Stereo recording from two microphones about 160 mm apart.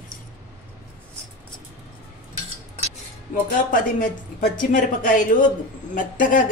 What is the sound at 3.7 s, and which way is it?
Speech, 55° left (ahead or behind).